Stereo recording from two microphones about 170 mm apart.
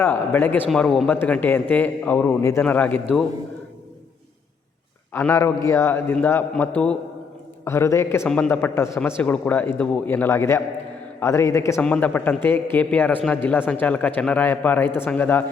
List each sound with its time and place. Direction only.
0.0 s speech: 15° left (ahead or behind)
5.1 s speech: 15° left (ahead or behind)